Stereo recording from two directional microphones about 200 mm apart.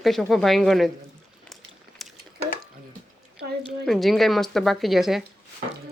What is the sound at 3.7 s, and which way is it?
Speech, centre (ahead or behind).